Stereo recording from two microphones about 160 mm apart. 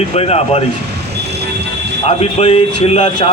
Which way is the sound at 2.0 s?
40° left (ahead or behind).